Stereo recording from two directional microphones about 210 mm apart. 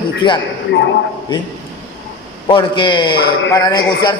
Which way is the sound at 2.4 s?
20° left (ahead or behind).